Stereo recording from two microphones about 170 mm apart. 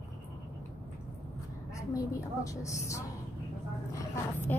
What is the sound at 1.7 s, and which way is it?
A woman's voice, 20° left (ahead or behind).